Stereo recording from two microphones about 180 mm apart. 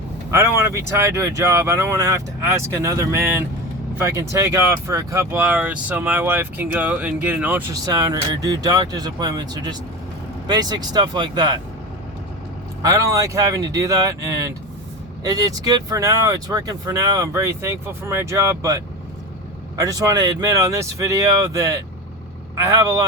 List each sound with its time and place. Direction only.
0.3 s speech: 15° right (ahead or behind)
7.7 s speech: 20° right (ahead or behind)
12.8 s speech: 15° right (ahead or behind)